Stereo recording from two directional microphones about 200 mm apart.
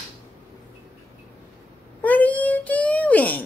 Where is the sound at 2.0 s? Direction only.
10° left (ahead or behind).